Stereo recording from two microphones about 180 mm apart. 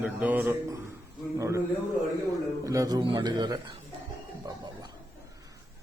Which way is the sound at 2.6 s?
20° right (ahead or behind).